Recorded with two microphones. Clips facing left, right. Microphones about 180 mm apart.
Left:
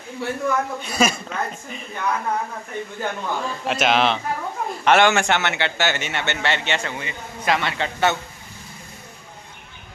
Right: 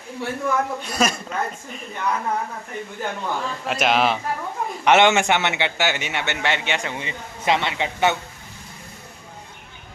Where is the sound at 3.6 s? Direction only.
Centre (ahead or behind).